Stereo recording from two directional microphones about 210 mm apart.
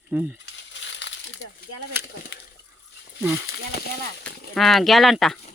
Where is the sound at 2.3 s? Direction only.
55° left (ahead or behind).